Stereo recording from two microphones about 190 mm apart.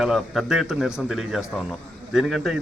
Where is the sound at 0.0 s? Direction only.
Centre (ahead or behind).